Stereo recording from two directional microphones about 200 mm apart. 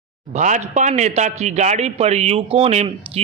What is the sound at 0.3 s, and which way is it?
A man's voice, 35° right (ahead or behind).